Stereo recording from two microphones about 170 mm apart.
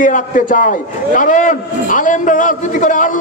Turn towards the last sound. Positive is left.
turn(degrees=50)  # may be behind; listen again after turning